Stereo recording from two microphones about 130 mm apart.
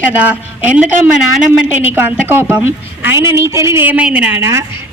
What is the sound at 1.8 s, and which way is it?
A woman's voice, 15° right (ahead or behind).